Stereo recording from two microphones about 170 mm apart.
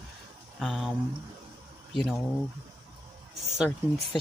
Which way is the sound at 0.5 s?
Centre (ahead or behind).